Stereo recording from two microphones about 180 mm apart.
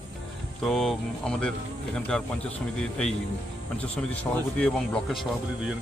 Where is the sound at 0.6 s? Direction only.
Centre (ahead or behind).